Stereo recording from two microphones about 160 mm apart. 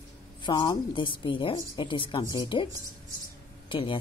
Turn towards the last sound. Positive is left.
turn(degrees=30)  # may be behind; listen again after turning